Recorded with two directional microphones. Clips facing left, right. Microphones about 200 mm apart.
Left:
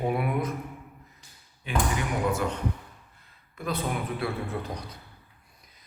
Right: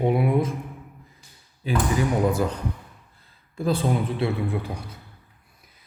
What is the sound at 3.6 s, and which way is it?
A man's voice, 30° right (ahead or behind).